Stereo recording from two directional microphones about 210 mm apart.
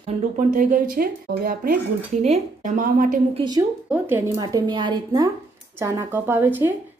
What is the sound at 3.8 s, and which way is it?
A woman's voice, 10° right (ahead or behind).